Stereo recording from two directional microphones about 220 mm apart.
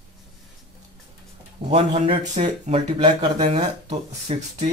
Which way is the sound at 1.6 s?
30° right (ahead or behind).